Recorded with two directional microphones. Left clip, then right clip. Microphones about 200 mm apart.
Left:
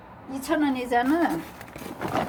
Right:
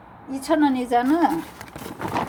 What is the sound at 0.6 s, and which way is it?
A woman's voice, 40° right (ahead or behind).